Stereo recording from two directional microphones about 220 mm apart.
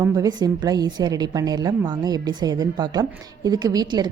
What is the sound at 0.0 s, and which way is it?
A woman's voice, 15° right (ahead or behind).